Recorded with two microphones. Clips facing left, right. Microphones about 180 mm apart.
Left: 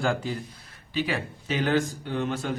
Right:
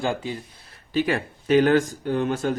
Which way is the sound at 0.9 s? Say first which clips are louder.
Right 5 dB; 50° right (ahead or behind).